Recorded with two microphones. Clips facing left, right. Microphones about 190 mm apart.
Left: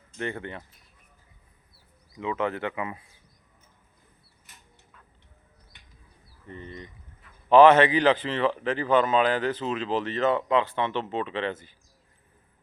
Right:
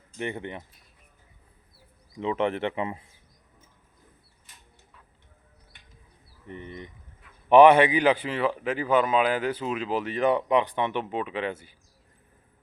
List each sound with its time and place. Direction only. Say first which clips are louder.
0.2 s speech: even; 15° right (ahead or behind)
2.1 s speech: right 2 dB; 25° right (ahead or behind)
6.5 s speech: right 1 dB; 20° right (ahead or behind)